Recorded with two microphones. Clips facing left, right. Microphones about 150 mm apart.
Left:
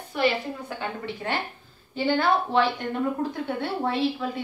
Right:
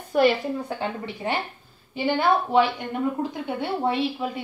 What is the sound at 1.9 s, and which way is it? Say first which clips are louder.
A woman's voice: right 1 dB; 10° right (ahead or behind).